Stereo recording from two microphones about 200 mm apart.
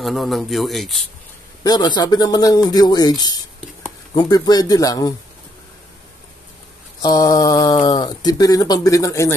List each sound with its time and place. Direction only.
0.0 s speech: centre (ahead or behind)
1.6 s speech: 20° left (ahead or behind)
7.0 s speech: 20° left (ahead or behind)